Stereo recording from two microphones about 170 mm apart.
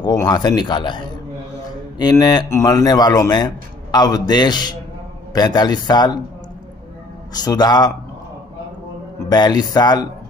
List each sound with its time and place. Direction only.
0.0 s a man's voice: 25° left (ahead or behind)
7.3 s a man's voice: 25° left (ahead or behind)
9.3 s a man's voice: 25° left (ahead or behind)